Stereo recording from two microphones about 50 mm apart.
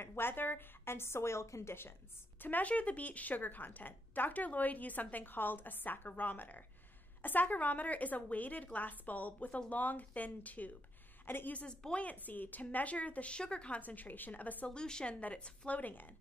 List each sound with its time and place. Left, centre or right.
0.0 s a woman's voice: left
2.4 s a woman's voice: left
11.5 s speech: centre
13.7 s a woman's voice: left
14.7 s a woman's voice: centre
15.8 s a woman's voice: left